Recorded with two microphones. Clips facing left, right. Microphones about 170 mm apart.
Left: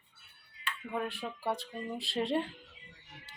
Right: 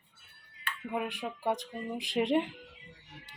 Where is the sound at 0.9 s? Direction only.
15° right (ahead or behind).